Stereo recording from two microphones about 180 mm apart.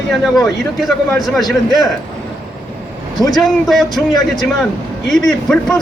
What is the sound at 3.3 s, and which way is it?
A man's voice, centre (ahead or behind).